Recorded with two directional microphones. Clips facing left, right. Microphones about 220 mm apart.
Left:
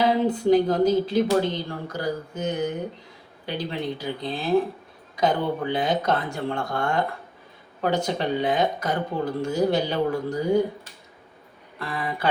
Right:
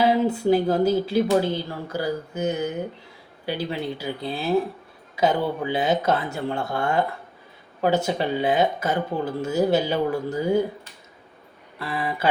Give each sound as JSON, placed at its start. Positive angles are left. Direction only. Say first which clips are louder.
{"t": 0.0, "sound": "speech", "louder": "right 1 dB", "side_deg": -10}
{"t": 11.8, "sound": "speech", "louder": "right 2 dB", "side_deg": -5}